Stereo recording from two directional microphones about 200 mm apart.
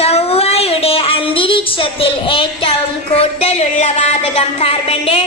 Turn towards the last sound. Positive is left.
turn(degrees=30)  # may be behind; listen again after turning